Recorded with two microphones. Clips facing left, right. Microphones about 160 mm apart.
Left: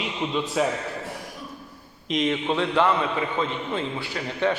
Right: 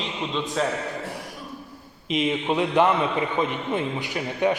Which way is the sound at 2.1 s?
5° right (ahead or behind).